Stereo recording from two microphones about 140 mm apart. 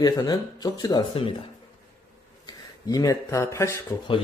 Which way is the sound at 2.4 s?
25° left (ahead or behind).